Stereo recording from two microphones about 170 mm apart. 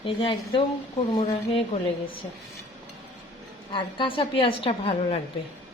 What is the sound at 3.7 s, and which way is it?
A woman's voice, 30° left (ahead or behind).